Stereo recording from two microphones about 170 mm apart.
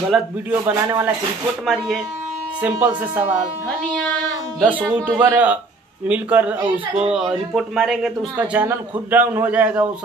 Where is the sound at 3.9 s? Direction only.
5° left (ahead or behind).